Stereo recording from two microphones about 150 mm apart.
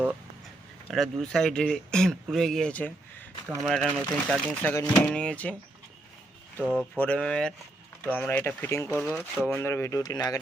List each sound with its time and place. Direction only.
0.9 s speech: centre (ahead or behind)
6.6 s speech: 10° right (ahead or behind)
7.0 s speech: 5° left (ahead or behind)
9.0 s speech: 5° right (ahead or behind)
9.5 s speech: 15° left (ahead or behind)